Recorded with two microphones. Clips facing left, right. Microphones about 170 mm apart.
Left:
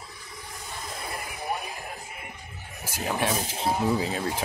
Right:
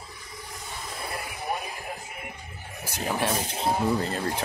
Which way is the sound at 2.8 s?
Centre (ahead or behind).